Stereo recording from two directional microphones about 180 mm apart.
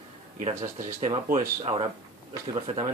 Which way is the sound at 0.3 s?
45° right (ahead or behind).